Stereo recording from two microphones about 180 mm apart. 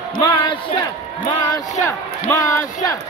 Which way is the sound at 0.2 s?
25° left (ahead or behind).